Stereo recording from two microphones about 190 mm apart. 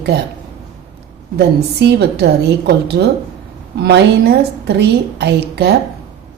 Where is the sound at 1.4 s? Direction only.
60° right (ahead or behind).